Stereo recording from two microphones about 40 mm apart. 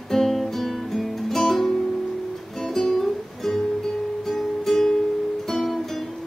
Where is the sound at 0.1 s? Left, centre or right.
Centre.